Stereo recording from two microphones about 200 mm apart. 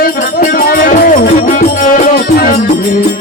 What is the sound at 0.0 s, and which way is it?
Music, 45° left (ahead or behind).